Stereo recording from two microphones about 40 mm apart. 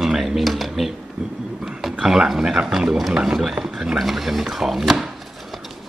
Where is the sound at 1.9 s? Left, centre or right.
Centre.